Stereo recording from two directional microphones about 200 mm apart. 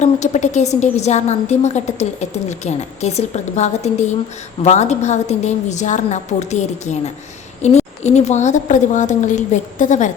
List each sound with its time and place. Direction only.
0.0 s a woman's voice: 35° left (ahead or behind)